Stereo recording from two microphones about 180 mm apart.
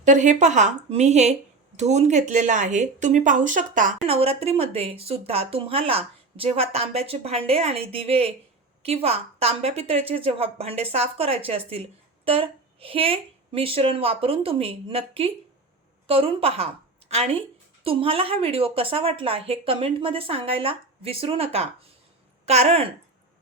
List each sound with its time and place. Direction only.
0.0 s a woman's voice: 40° right (ahead or behind)
4.0 s a woman's voice: 35° right (ahead or behind)